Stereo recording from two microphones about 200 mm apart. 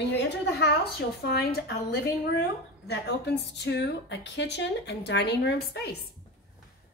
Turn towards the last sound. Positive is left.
turn(degrees=60)  # may be behind; listen again after turning